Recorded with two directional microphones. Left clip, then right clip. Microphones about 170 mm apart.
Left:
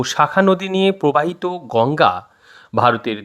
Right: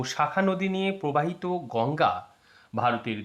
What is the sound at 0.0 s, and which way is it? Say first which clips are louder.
Speech: left 11 dB; 45° left (ahead or behind).